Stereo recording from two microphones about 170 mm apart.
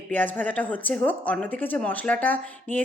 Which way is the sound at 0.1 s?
10° left (ahead or behind).